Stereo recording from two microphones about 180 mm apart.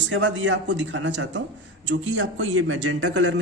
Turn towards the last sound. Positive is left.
turn(degrees=-90)